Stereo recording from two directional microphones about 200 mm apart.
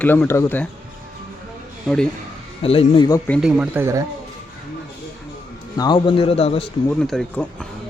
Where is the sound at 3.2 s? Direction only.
5° left (ahead or behind).